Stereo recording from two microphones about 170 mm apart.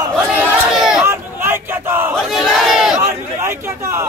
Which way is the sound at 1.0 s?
15° right (ahead or behind).